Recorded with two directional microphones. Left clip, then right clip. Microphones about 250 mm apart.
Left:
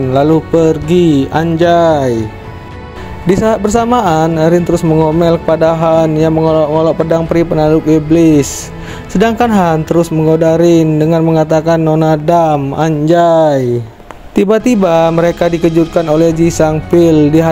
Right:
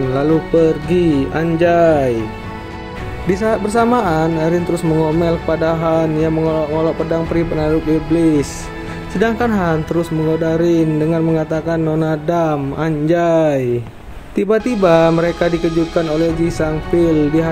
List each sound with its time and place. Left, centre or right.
0.1 s speech: left
3.3 s speech: left